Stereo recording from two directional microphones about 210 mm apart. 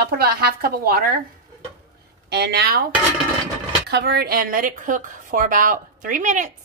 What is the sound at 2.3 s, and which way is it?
Speech, 50° right (ahead or behind).